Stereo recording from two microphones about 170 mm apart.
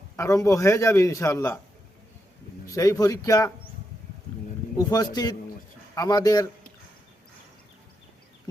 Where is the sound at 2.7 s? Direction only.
20° left (ahead or behind).